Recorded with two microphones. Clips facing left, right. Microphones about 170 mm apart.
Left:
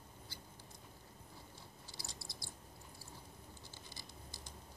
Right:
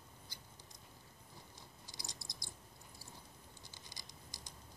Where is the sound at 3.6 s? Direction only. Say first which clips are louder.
Left 3 dB; 15° right (ahead or behind).